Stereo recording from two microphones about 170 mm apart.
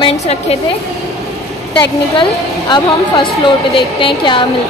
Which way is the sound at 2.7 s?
30° left (ahead or behind).